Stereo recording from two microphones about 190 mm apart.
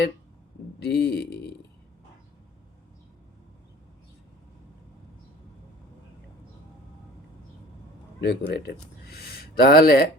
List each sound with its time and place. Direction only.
0.8 s speech: 60° left (ahead or behind)
8.2 s speech: 60° left (ahead or behind)